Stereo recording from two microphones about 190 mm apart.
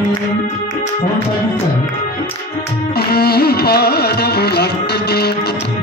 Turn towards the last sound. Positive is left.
turn(degrees=60)  # may be behind; listen again after turning